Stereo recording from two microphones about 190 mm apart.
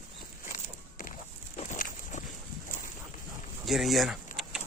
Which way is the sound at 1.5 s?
40° left (ahead or behind).